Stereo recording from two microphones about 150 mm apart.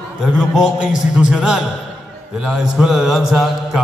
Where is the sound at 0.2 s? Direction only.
5° right (ahead or behind).